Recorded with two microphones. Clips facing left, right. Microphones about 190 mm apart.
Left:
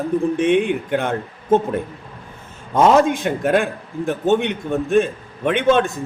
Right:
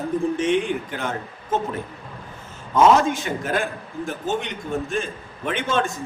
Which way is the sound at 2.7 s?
55° left (ahead or behind).